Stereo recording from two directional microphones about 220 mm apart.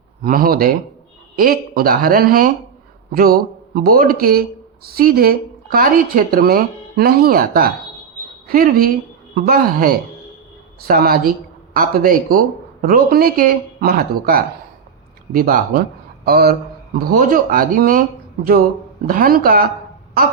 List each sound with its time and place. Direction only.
0.2 s speech: 40° right (ahead or behind)
19.0 s speech: 40° right (ahead or behind)